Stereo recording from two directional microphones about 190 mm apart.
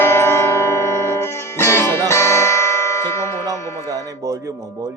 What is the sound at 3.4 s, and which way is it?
Music, 20° right (ahead or behind).